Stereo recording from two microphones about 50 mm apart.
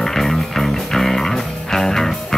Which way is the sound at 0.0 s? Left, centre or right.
Centre.